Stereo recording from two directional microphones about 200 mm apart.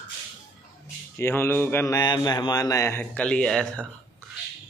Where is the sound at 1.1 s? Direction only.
10° left (ahead or behind).